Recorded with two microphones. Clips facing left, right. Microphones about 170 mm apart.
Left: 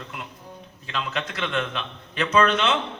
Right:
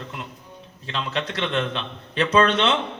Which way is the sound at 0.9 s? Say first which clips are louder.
Right 2 dB; 30° right (ahead or behind).